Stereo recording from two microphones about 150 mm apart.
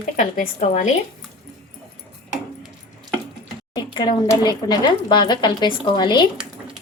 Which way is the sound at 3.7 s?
30° left (ahead or behind).